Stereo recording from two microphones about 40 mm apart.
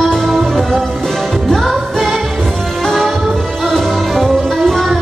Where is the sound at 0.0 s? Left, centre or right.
Centre.